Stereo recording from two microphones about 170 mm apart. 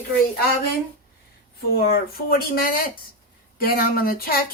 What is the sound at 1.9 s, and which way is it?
A woman's voice, 65° left (ahead or behind).